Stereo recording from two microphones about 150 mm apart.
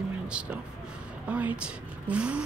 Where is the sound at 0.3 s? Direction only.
5° right (ahead or behind).